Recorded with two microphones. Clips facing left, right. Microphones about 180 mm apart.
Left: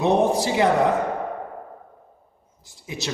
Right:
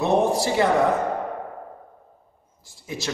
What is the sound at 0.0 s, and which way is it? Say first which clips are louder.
Speech: left 1 dB; 20° left (ahead or behind).